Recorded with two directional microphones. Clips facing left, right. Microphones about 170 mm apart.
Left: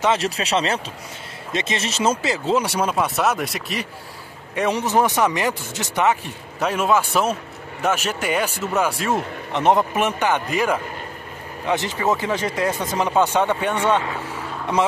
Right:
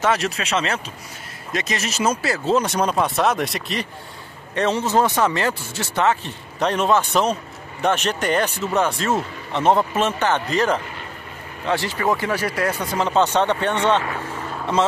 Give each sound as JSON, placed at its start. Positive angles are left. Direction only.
{"t": 0.2, "sound": "speech", "side_deg": 35}